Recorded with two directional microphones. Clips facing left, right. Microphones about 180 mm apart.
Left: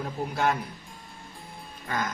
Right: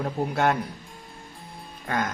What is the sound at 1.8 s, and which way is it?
Speech, 50° right (ahead or behind).